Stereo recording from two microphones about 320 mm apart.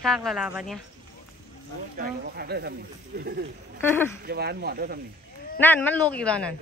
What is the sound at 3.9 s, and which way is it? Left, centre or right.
Speech, centre.